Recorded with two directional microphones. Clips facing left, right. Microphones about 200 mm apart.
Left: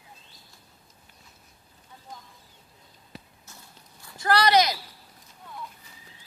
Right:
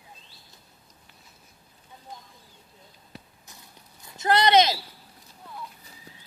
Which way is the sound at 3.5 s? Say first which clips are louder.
Even; 20° right (ahead or behind).